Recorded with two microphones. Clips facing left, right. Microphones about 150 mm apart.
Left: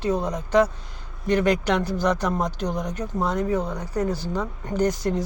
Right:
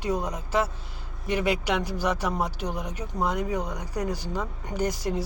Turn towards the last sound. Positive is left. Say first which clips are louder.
# left 5 dB
turn(degrees=-10)  # may be behind; listen again after turning